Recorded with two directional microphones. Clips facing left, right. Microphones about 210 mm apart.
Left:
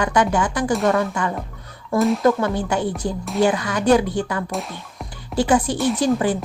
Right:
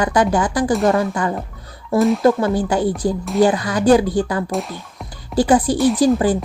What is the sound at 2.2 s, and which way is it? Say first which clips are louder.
A woman's voice: right 3 dB; 35° right (ahead or behind).